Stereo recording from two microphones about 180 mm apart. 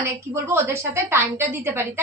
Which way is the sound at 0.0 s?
15° right (ahead or behind).